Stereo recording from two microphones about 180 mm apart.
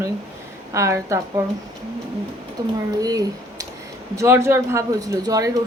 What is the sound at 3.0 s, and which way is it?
A woman's voice, 20° right (ahead or behind).